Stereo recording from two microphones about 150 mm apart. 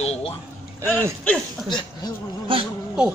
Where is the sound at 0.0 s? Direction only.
40° left (ahead or behind).